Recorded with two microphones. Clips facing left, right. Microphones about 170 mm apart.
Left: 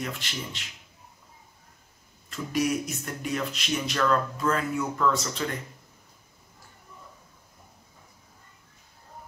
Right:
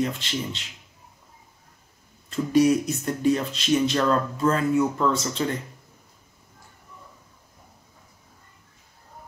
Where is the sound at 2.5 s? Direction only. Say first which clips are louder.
Right 8 dB; 30° right (ahead or behind).